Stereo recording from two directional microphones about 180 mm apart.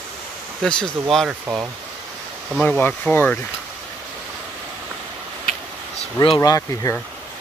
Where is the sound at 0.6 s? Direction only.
5° left (ahead or behind).